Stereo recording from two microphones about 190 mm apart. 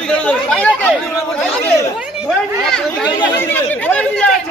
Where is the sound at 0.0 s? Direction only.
5° left (ahead or behind).